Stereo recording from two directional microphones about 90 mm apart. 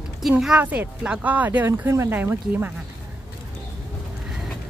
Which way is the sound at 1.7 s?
30° right (ahead or behind).